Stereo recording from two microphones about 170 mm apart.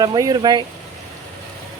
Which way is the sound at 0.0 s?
20° right (ahead or behind).